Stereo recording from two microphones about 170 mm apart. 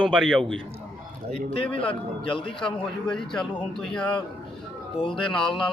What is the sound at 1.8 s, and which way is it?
A man's voice, 30° left (ahead or behind).